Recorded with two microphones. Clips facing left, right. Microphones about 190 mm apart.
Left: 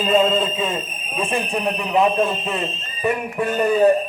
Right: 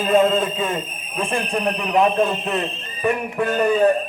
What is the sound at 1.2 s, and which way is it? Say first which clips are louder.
Speech: even; 5° left (ahead or behind).